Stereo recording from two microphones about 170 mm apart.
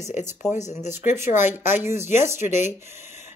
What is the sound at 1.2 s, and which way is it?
A woman's voice, 15° right (ahead or behind).